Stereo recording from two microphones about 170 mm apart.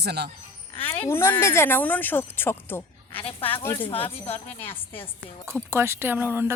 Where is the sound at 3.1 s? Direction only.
30° left (ahead or behind).